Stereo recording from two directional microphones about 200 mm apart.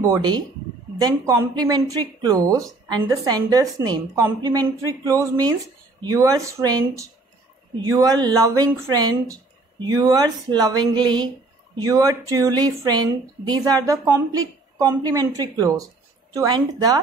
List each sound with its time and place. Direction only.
0.0 s speech: 15° right (ahead or behind)